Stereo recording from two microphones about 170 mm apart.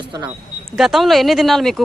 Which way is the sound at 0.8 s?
Centre (ahead or behind).